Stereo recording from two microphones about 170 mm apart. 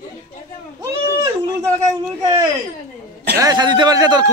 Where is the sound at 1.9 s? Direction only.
20° right (ahead or behind).